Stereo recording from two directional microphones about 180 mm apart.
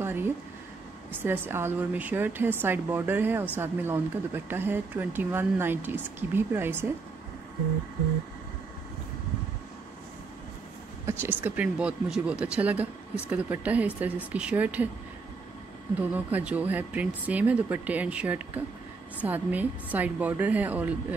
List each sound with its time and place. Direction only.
0.0 s a sound: 10° right (ahead or behind)
1.1 s speech: 10° right (ahead or behind)
11.1 s speech: 10° right (ahead or behind)
16.0 s speech: 10° right (ahead or behind)